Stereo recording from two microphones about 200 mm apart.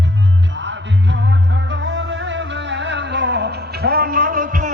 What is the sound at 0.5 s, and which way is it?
Music, 65° right (ahead or behind).